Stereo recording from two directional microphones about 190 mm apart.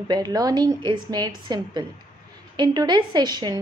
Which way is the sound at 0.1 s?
20° right (ahead or behind).